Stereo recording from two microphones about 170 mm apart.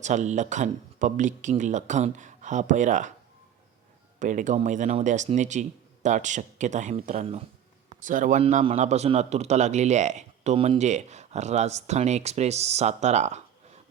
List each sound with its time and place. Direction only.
0.0 s speech: 45° right (ahead or behind)
4.2 s speech: 50° right (ahead or behind)
8.4 s a man's voice: 35° right (ahead or behind)